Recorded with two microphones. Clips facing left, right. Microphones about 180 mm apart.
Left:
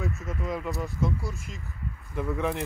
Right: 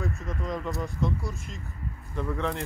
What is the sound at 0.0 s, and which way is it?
Speech, centre (ahead or behind).